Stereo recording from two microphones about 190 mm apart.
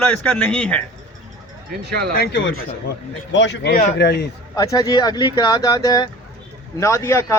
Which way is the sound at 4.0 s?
60° left (ahead or behind).